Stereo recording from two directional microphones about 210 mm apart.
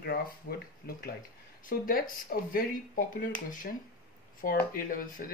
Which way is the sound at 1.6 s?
45° left (ahead or behind).